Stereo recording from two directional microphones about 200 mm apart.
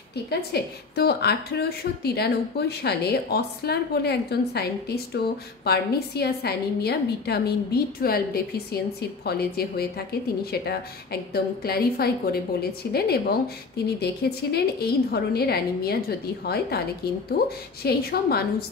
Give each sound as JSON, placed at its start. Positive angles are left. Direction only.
{"t": 0.1, "sound": "a woman's voice", "side_deg": 55}
{"t": 14.5, "sound": "a woman's voice", "side_deg": 50}